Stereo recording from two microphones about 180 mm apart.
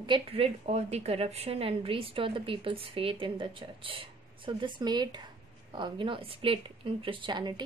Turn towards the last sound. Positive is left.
turn(degrees=-25)  # may be behind; listen again after turning